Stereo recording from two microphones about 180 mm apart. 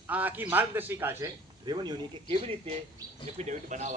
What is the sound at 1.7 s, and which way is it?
A man's voice, 25° right (ahead or behind).